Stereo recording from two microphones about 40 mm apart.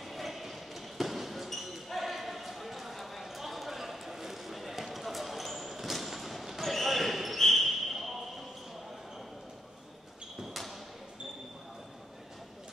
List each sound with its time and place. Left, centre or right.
0.0 s basketball bounce: centre
10.5 s basketball bounce: centre